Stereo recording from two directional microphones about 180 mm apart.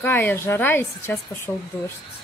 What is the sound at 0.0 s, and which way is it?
A woman's voice, 10° left (ahead or behind).